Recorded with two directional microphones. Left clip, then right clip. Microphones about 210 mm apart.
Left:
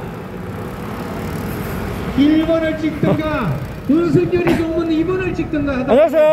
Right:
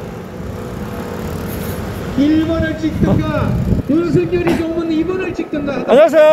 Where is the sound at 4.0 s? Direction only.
35° left (ahead or behind).